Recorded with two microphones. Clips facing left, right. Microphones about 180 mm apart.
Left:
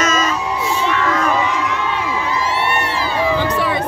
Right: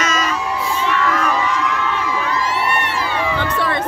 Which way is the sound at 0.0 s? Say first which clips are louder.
Left 3 dB; 45° left (ahead or behind).